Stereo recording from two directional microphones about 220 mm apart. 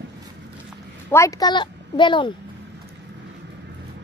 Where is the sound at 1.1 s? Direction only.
15° left (ahead or behind).